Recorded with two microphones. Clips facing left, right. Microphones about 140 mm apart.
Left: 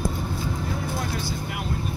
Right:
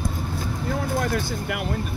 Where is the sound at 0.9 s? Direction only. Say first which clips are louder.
Right 4 dB; 50° right (ahead or behind).